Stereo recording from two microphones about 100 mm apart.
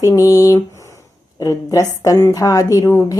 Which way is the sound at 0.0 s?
35° left (ahead or behind).